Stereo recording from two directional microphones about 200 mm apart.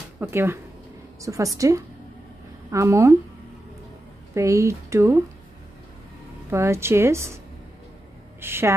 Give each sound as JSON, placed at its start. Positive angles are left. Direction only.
{"t": 0.2, "sound": "speech", "side_deg": -10}
{"t": 4.3, "sound": "speech", "side_deg": -15}
{"t": 6.5, "sound": "speech", "side_deg": -10}
{"t": 8.4, "sound": "speech", "side_deg": -10}